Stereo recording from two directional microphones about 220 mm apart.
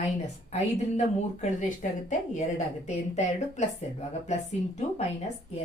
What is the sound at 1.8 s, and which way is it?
A woman's voice, 35° left (ahead or behind).